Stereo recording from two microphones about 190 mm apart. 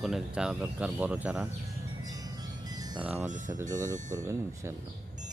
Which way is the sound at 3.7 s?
20° right (ahead or behind).